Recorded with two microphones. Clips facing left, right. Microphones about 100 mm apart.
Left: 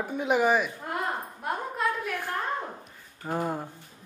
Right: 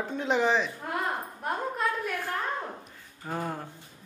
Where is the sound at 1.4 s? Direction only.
Centre (ahead or behind).